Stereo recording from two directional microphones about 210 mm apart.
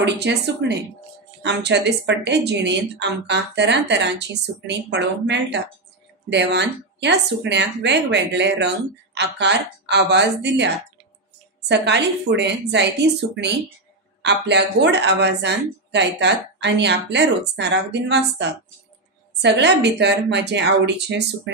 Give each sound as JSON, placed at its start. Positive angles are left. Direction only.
{"t": 0.0, "sound": "a woman's voice", "side_deg": -55}
{"t": 14.2, "sound": "a woman's voice", "side_deg": -55}